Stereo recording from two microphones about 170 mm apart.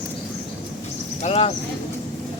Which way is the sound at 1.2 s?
35° left (ahead or behind).